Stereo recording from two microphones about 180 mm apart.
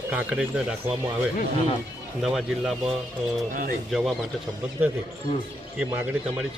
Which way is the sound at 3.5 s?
50° right (ahead or behind).